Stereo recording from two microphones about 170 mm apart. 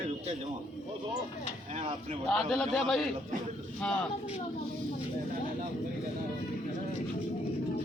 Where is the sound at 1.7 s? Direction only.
40° right (ahead or behind).